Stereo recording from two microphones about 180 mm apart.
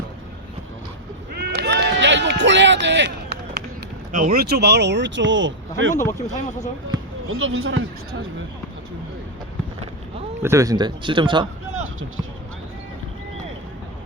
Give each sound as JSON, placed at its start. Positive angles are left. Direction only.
{"t": 1.3, "sound": "run", "side_deg": -65}
{"t": 4.1, "sound": "speech", "side_deg": -55}
{"t": 6.0, "sound": "speech", "side_deg": 15}
{"t": 7.3, "sound": "speech", "side_deg": -90}
{"t": 10.4, "sound": "speech", "side_deg": -15}